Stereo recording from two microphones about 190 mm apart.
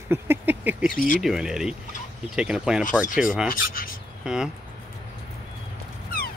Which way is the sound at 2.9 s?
45° left (ahead or behind).